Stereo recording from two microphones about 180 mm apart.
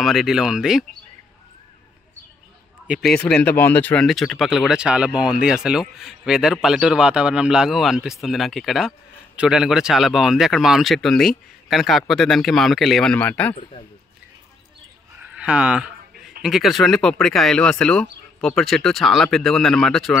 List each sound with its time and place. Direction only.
0.0 s speech: centre (ahead or behind)
2.9 s speech: centre (ahead or behind)
13.6 s a man's voice: 30° left (ahead or behind)
15.1 s a sound: 5° right (ahead or behind)
16.4 s speech: centre (ahead or behind)